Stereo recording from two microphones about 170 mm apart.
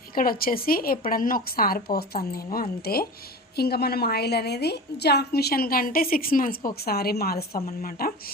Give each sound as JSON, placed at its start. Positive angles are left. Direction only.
{"t": 0.1, "sound": "a woman's voice", "side_deg": 60}
{"t": 6.7, "sound": "a woman's voice", "side_deg": 65}